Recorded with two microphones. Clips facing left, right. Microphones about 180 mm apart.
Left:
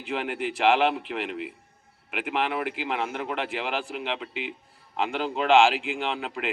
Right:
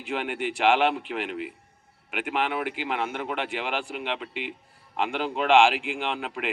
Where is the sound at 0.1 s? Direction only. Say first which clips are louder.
Even; centre (ahead or behind).